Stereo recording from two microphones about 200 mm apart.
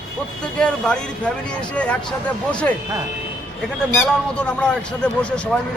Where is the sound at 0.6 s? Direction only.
5° left (ahead or behind).